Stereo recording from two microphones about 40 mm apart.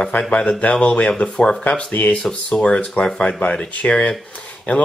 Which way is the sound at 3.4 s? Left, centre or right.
Left.